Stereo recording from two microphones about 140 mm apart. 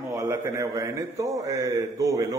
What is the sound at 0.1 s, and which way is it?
A man's voice, 20° right (ahead or behind).